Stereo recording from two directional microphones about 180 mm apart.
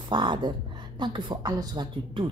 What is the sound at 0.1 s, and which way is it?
A woman's voice, 25° right (ahead or behind).